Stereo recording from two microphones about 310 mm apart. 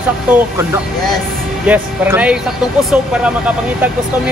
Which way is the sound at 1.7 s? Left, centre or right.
Centre.